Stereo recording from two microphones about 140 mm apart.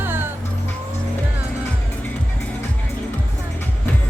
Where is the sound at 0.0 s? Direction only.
15° right (ahead or behind).